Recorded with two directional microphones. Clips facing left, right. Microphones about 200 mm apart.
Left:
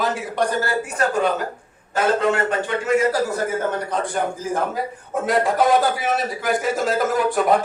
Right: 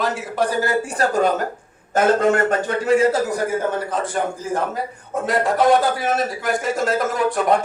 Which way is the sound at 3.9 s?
Centre (ahead or behind).